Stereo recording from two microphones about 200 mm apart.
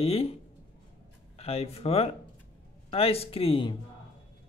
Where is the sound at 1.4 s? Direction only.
30° left (ahead or behind).